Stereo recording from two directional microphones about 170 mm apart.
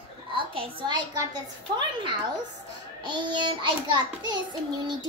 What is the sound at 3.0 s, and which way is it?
Child singing, 25° right (ahead or behind).